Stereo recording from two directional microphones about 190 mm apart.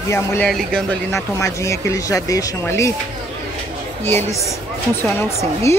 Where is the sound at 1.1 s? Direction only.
15° left (ahead or behind).